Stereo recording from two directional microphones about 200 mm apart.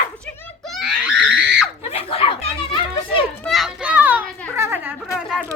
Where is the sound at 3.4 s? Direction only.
Centre (ahead or behind).